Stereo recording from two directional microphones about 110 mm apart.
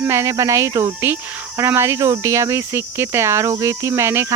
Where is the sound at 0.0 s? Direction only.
25° right (ahead or behind).